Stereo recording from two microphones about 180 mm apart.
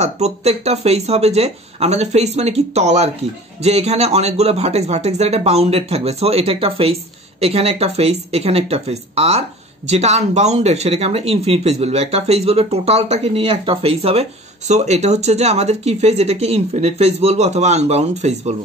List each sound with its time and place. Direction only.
0.0 s speech: 35° right (ahead or behind)